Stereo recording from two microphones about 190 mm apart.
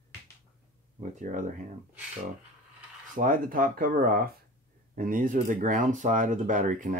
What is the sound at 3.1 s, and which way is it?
Speech, 45° right (ahead or behind).